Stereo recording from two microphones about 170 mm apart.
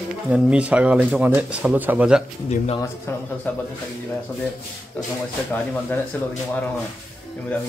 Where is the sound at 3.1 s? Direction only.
15° left (ahead or behind).